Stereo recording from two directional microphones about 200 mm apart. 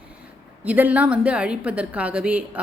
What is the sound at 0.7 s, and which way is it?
A woman's voice, 5° right (ahead or behind).